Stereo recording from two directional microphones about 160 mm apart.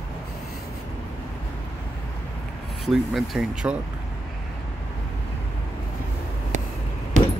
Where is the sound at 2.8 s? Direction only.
Centre (ahead or behind).